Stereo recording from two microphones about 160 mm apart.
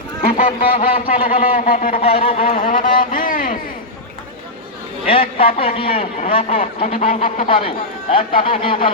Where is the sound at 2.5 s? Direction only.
55° left (ahead or behind).